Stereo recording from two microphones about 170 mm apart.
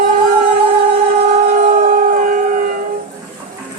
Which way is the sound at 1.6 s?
50° right (ahead or behind).